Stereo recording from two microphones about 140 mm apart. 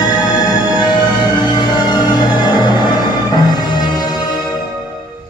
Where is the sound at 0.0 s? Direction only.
30° left (ahead or behind).